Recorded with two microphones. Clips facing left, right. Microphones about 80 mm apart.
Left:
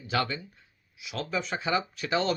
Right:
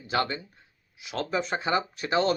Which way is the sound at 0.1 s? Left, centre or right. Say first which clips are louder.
Right 2 dB; right.